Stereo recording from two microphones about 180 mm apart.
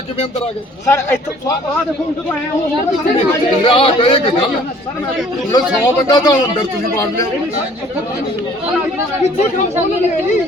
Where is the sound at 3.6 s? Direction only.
30° left (ahead or behind).